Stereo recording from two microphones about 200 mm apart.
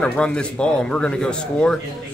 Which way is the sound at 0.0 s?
5° left (ahead or behind).